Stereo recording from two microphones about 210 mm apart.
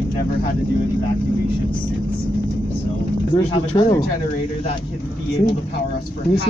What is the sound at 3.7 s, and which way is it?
Speech, 20° left (ahead or behind).